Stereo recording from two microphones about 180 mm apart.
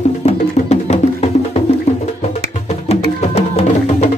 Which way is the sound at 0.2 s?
35° left (ahead or behind).